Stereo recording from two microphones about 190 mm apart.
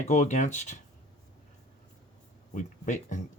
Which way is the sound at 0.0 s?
40° left (ahead or behind).